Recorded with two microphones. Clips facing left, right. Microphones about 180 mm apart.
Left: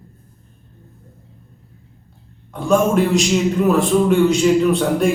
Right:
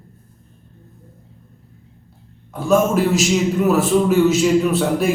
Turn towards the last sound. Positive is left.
turn(degrees=-5)  # may be behind; listen again after turning